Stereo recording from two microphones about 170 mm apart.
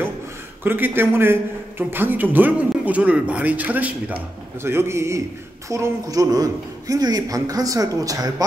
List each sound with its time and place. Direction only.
0.7 s a man's voice: 10° right (ahead or behind)